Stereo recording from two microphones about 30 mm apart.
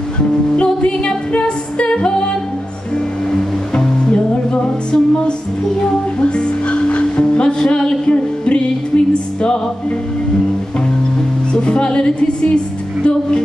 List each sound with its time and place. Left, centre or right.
0.6 s music: left
2.0 s a capella: left
3.7 s music: left
6.1 s music: left
7.4 s music: left
8.1 s music: left
11.5 s music: left